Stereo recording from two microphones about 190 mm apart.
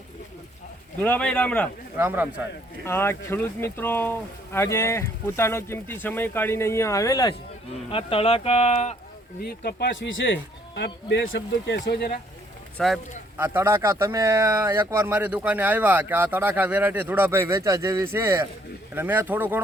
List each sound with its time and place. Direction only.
1.0 s speech: 5° left (ahead or behind)
2.0 s speech: 10° right (ahead or behind)
2.8 s speech: 10° left (ahead or behind); by 9.0 s 35° left (ahead or behind)
9.4 s speech: 55° left (ahead or behind)
12.7 s speech: centre (ahead or behind)
13.3 s speech: 10° right (ahead or behind)